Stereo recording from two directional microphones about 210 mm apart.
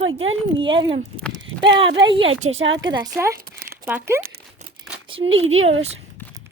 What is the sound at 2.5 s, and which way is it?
Speech, 65° right (ahead or behind).